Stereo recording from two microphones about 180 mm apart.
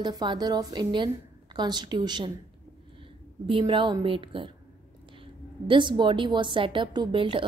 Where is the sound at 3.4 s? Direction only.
30° right (ahead or behind).